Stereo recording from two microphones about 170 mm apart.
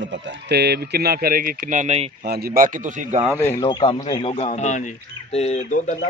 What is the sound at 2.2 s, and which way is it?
Speech, 65° right (ahead or behind).